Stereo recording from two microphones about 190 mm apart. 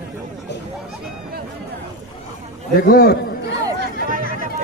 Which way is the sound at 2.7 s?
55° left (ahead or behind).